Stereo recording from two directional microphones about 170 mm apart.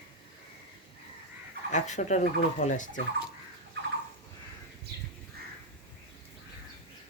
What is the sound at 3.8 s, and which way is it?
Squawk, 90° right.